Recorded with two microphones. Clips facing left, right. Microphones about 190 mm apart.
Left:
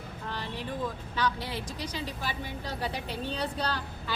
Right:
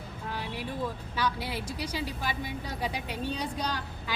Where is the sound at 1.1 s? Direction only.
10° right (ahead or behind).